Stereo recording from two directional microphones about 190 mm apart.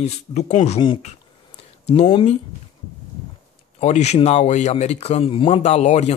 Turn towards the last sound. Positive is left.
turn(degrees=35)  # may be behind; listen again after turning